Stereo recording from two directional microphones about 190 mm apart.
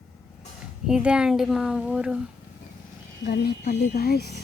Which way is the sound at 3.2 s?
55° left (ahead or behind).